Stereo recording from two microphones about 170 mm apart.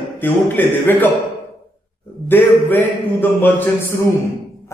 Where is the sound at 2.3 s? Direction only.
10° left (ahead or behind).